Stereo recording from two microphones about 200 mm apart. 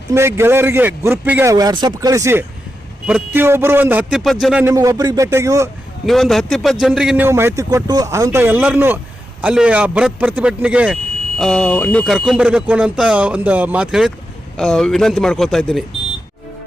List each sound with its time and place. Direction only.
0.1 s a man's voice: 15° right (ahead or behind)
4.6 s a man's voice: 15° right (ahead or behind)
6.1 s a man's voice: centre (ahead or behind)